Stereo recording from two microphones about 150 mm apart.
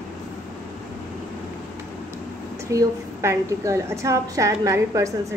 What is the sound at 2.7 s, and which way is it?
A woman's voice, 20° right (ahead or behind).